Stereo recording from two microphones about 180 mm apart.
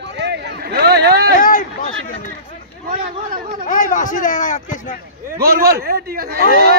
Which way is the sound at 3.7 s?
45° left (ahead or behind).